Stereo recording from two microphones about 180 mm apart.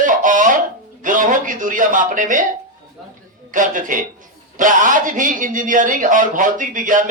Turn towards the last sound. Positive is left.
turn(degrees=-45)  # may be behind; listen again after turning